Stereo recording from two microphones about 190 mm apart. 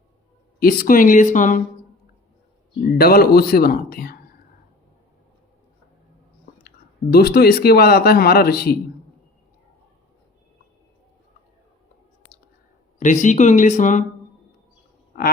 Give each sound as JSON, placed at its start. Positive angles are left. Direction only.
{"t": 0.6, "sound": "speech", "side_deg": 50}
{"t": 2.8, "sound": "speech", "side_deg": 50}
{"t": 6.4, "sound": "speech", "side_deg": 55}
{"t": 13.0, "sound": "speech", "side_deg": 40}